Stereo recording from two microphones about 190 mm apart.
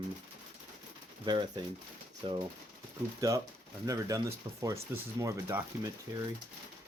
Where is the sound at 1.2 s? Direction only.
25° right (ahead or behind).